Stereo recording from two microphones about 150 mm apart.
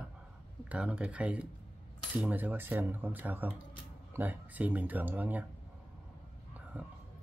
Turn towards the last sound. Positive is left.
turn(degrees=-10)  # may be behind; listen again after turning